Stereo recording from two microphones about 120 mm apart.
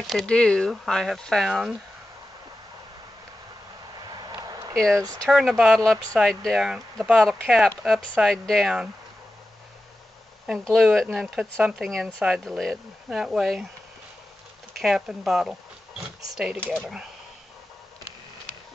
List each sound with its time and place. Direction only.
0.0 s speech: centre (ahead or behind)
4.0 s vehicle: 35° right (ahead or behind)
4.7 s speech: 5° left (ahead or behind)
10.6 s speech: centre (ahead or behind)
14.8 s speech: centre (ahead or behind)